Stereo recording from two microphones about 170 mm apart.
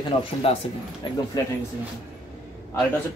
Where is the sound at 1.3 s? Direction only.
25° left (ahead or behind).